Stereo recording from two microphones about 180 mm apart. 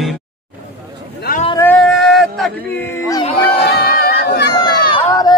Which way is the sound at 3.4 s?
65° left (ahead or behind).